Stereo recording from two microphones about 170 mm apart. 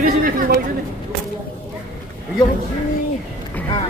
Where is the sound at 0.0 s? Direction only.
55° right (ahead or behind).